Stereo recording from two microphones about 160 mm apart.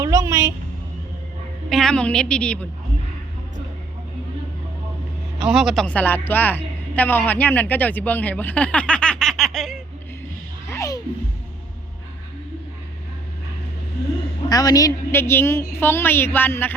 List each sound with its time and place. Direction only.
0.0 s a woman's voice: 20° right (ahead or behind)
1.7 s a woman's voice: 5° left (ahead or behind)
5.4 s a woman's voice: 5° right (ahead or behind)
10.7 s music: 20° left (ahead or behind)
14.5 s a woman's voice: 25° left (ahead or behind)